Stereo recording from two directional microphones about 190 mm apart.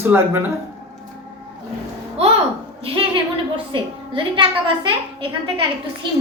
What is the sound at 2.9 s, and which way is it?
A woman's voice, 25° right (ahead or behind).